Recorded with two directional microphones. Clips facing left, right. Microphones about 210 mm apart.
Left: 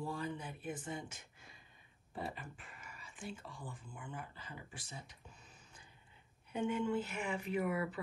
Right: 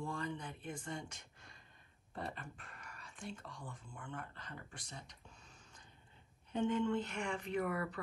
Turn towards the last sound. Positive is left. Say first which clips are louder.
# left 1 dB
turn(degrees=5)  # may be behind; listen again after turning